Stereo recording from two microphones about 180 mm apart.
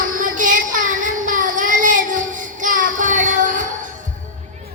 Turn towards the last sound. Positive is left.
turn(degrees=-45)  # may be behind; listen again after turning